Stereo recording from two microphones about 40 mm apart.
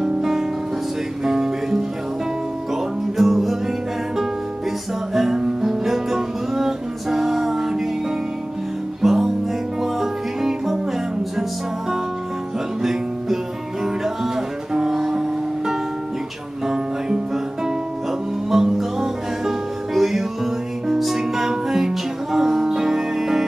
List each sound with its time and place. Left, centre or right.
0.0 s music: centre
9.0 s music: centre
13.8 s music: centre
18.5 s music: centre